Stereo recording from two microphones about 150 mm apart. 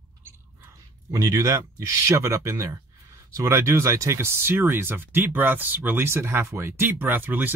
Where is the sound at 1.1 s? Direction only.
20° right (ahead or behind).